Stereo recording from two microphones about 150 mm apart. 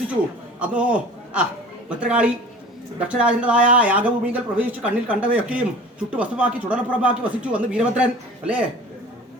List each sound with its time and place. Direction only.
0.6 s a man's voice: 10° right (ahead or behind)